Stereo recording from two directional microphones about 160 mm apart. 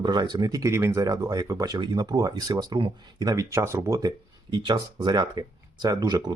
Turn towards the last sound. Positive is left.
turn(degrees=-25)  # may be behind; listen again after turning